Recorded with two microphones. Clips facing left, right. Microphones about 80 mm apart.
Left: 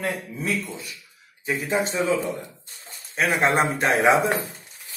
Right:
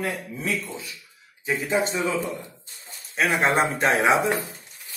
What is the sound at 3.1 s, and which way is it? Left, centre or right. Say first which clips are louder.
Speech: even; left.